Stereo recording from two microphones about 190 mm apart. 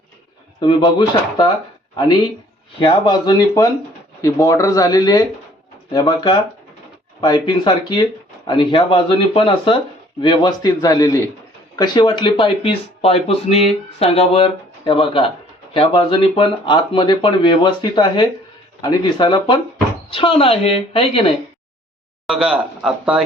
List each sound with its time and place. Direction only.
0.6 s speech: 25° left (ahead or behind)
2.7 s speech: 25° left (ahead or behind)
22.3 s speech: 5° right (ahead or behind)